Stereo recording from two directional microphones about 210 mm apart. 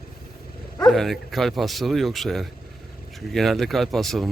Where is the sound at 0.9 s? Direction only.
Centre (ahead or behind).